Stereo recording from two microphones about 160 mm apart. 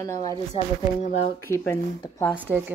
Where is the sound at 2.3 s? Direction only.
10° right (ahead or behind).